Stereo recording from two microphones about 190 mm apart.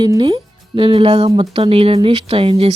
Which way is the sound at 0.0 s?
25° right (ahead or behind).